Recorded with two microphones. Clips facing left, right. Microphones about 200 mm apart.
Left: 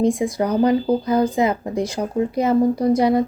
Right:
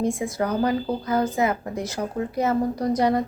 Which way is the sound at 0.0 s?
15° left (ahead or behind).